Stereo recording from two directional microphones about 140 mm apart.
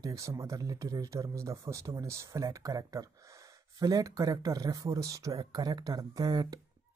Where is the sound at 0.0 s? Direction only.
20° right (ahead or behind).